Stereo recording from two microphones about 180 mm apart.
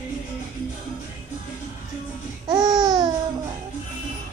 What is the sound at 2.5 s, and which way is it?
Babbling, 20° right (ahead or behind).